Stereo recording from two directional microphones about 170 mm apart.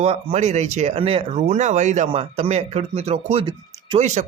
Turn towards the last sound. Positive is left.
turn(degrees=-45)  # may be behind; listen again after turning